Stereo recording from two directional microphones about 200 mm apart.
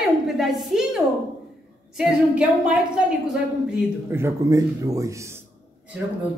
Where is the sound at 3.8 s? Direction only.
15° right (ahead or behind).